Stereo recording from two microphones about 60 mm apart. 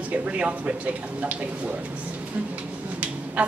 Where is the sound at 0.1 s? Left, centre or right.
Right.